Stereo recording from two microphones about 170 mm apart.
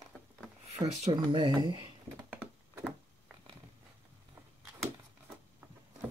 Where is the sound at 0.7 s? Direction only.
40° right (ahead or behind).